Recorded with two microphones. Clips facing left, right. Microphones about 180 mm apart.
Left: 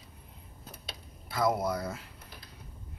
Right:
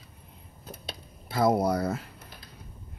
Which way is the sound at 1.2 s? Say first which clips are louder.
Right 5 dB; 30° right (ahead or behind).